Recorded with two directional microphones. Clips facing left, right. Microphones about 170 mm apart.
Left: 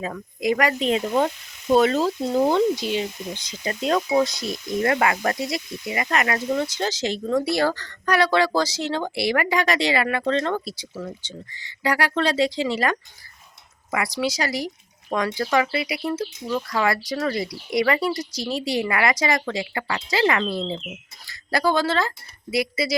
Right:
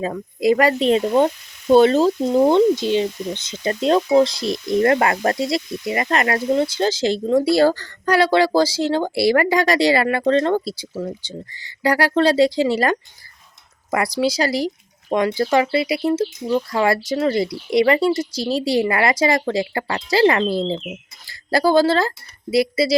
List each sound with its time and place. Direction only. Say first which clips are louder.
0.0 s speech: right 6 dB; 30° right (ahead or behind)